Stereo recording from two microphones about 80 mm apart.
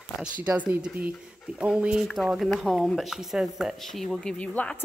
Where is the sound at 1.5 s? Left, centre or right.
Centre.